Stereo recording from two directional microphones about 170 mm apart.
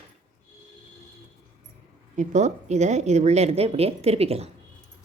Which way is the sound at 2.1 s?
45° right (ahead or behind).